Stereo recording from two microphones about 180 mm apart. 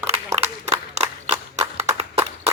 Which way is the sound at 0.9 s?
40° right (ahead or behind).